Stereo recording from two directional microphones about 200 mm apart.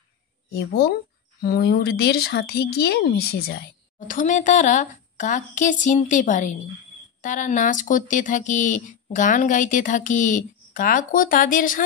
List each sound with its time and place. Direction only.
0.6 s speech: 55° left (ahead or behind)
4.1 s speech: 40° left (ahead or behind)